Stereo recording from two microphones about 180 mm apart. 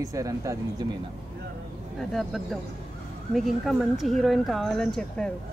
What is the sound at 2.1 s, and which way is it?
A woman's voice, centre (ahead or behind).